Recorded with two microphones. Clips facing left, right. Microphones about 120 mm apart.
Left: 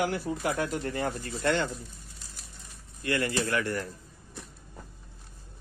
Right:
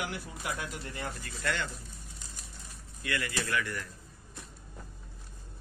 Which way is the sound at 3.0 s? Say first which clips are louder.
Left 6 dB; 35° left (ahead or behind).